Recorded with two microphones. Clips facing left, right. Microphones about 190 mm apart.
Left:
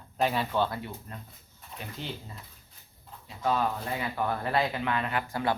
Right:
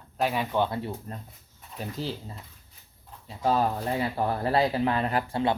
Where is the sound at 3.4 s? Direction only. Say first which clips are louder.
Right 3 dB; 35° right (ahead or behind).